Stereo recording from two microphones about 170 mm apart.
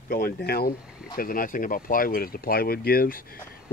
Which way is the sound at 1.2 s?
55° left (ahead or behind).